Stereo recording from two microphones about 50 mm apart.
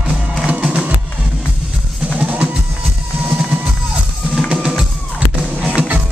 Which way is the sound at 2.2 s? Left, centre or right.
Right.